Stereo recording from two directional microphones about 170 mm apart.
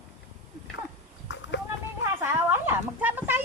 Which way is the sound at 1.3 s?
90° left.